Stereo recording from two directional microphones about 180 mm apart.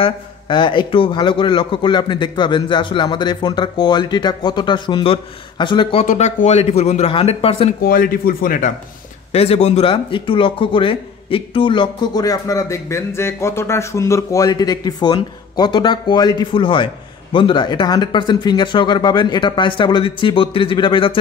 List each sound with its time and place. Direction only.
0.0 s speech: 25° left (ahead or behind)
7.8 s speech: 55° left (ahead or behind)
9.3 s speech: 35° left (ahead or behind)